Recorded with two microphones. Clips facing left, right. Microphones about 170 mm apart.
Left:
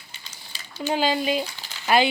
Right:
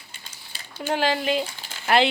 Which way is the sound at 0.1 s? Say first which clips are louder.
Left 1 dB; 55° right (ahead or behind).